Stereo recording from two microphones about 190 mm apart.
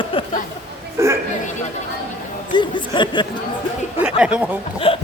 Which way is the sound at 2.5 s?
25° left (ahead or behind).